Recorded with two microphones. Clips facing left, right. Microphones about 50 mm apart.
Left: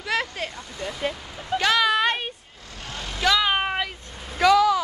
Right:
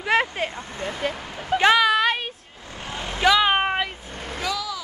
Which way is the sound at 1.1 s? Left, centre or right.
Right.